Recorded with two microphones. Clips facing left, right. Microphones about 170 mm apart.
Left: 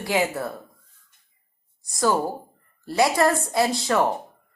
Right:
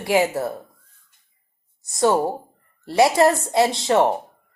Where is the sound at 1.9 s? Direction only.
25° right (ahead or behind).